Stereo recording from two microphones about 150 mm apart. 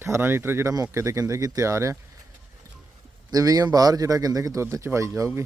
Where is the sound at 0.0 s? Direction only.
15° right (ahead or behind).